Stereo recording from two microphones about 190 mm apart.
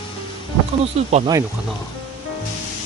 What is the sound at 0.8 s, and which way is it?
Speech, 35° right (ahead or behind).